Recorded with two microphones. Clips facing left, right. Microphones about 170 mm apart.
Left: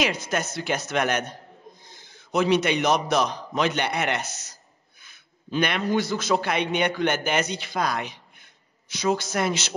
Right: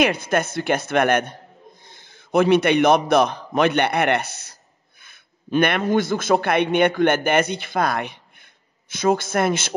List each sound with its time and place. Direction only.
0.0 s a woman's voice: 55° right (ahead or behind)